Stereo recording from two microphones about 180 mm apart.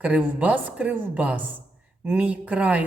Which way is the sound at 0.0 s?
10° right (ahead or behind).